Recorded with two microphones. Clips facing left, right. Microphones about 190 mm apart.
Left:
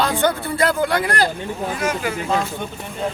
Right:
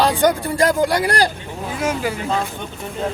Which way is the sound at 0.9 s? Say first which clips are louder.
Right 2 dB; 40° right (ahead or behind).